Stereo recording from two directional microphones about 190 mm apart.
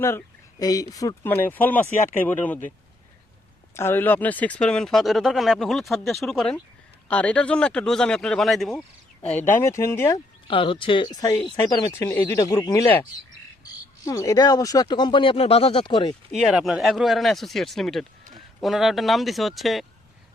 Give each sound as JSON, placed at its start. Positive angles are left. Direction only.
{"t": 0.6, "sound": "speech", "side_deg": 20}
{"t": 3.8, "sound": "speech", "side_deg": 10}
{"t": 9.3, "sound": "speech", "side_deg": 10}
{"t": 10.5, "sound": "speech", "side_deg": 25}
{"t": 16.3, "sound": "speech", "side_deg": 0}